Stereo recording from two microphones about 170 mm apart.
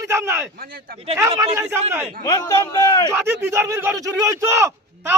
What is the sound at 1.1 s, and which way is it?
Speech, 20° right (ahead or behind).